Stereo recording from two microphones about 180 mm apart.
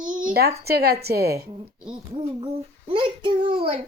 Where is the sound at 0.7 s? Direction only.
60° right (ahead or behind).